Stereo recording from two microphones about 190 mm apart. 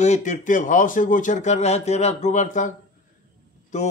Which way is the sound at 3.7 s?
40° left (ahead or behind).